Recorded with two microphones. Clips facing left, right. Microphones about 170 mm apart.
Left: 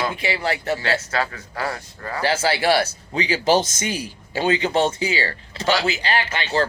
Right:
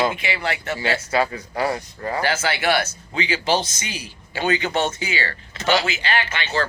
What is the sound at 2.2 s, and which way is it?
Speech, 30° left (ahead or behind).